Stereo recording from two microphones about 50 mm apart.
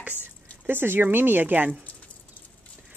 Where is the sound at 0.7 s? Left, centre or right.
Right.